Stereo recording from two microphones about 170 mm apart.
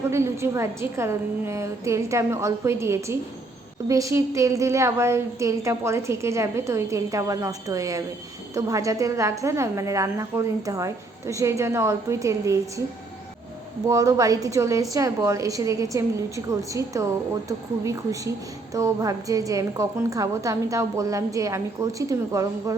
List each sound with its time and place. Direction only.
0.1 s a woman's voice: 15° right (ahead or behind)
13.8 s a woman's voice: 20° right (ahead or behind)
18.7 s a woman's voice: 20° right (ahead or behind)